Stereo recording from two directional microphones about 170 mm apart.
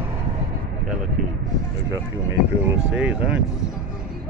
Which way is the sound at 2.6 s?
5° right (ahead or behind).